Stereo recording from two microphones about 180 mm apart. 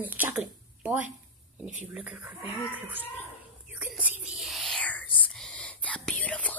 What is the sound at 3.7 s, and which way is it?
Whispering, 5° right (ahead or behind).